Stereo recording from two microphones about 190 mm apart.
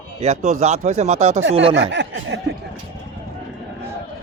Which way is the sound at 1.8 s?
65° right (ahead or behind).